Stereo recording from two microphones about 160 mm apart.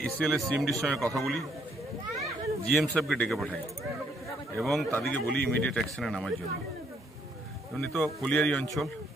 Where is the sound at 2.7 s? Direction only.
Centre (ahead or behind).